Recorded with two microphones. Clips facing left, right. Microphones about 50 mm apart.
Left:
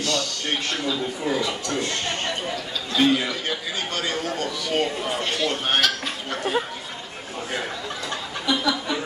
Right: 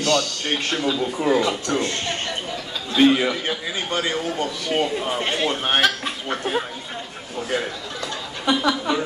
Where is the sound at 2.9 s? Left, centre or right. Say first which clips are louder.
Right 4 dB; right.